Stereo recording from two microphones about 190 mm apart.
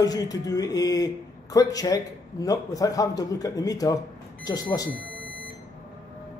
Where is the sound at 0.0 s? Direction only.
20° left (ahead or behind).